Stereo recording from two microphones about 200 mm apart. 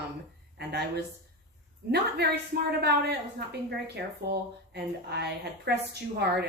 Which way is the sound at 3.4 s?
55° right (ahead or behind).